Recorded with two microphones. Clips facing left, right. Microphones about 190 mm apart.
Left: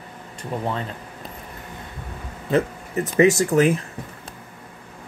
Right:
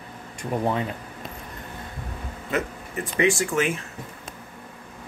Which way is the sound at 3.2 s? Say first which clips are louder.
Left 6 dB; 40° left (ahead or behind).